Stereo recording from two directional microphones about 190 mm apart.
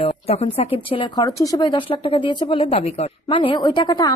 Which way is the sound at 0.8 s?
25° left (ahead or behind).